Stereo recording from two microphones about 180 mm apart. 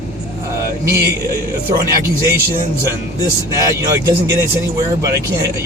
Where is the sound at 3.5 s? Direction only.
20° right (ahead or behind).